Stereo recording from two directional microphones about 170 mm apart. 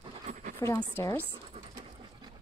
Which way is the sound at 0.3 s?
50° right (ahead or behind).